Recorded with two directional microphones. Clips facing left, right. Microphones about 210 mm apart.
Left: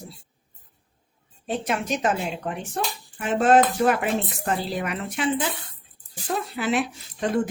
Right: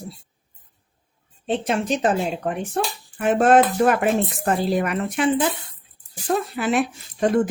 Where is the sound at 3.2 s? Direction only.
55° right (ahead or behind).